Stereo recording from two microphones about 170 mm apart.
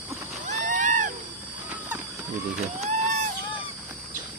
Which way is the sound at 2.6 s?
40° right (ahead or behind).